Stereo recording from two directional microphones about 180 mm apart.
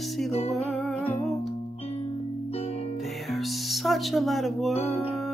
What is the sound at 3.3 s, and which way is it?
Music, centre (ahead or behind).